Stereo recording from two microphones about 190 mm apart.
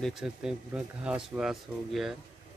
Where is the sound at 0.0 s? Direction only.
Centre (ahead or behind).